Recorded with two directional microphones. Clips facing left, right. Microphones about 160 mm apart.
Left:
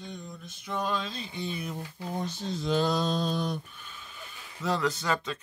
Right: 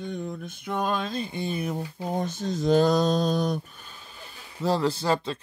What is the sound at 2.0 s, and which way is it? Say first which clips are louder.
Speech: right 4 dB; 50° right (ahead or behind).